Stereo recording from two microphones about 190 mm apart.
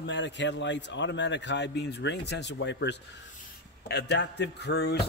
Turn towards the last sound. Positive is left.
turn(degrees=60)  # may be behind; listen again after turning